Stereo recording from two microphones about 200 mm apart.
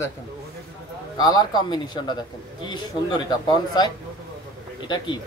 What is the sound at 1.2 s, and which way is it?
A man's voice, 20° left (ahead or behind).